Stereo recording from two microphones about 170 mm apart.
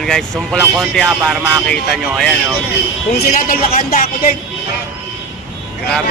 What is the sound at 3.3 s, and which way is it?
Speech, 55° left (ahead or behind).